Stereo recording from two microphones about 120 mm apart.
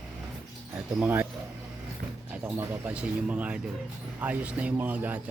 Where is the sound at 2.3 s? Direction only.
15° right (ahead or behind).